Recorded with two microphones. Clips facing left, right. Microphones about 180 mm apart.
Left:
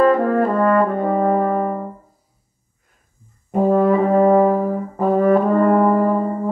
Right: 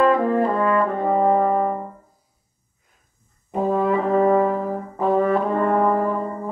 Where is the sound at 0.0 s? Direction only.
45° left (ahead or behind).